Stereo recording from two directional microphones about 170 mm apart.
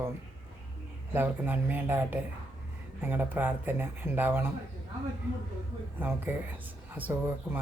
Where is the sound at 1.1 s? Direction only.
10° right (ahead or behind).